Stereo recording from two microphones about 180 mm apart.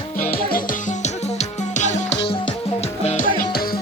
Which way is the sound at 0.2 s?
55° left (ahead or behind).